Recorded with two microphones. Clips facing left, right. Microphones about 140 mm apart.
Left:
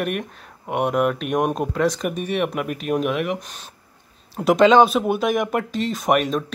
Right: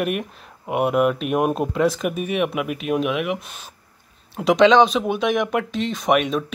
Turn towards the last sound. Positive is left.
turn(degrees=0)  # may be behind; listen again after turning